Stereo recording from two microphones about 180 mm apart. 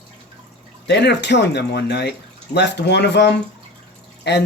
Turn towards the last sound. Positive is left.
turn(degrees=70)  # may be behind; listen again after turning